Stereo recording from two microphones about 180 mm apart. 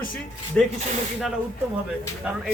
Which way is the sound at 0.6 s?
5° left (ahead or behind).